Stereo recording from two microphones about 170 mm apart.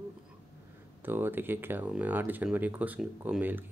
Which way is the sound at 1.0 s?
10° right (ahead or behind).